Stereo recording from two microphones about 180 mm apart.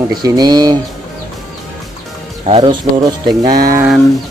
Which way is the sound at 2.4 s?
35° right (ahead or behind).